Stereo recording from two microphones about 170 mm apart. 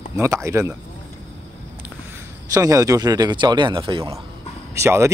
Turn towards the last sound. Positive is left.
turn(degrees=-15)  # may be behind; listen again after turning